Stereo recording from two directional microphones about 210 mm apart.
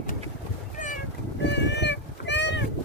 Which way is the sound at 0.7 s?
35° left (ahead or behind).